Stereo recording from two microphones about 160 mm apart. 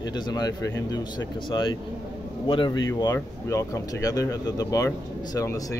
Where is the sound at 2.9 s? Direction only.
20° left (ahead or behind).